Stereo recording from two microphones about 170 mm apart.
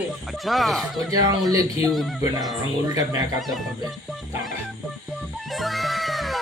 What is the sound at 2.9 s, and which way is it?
Speech, 20° right (ahead or behind).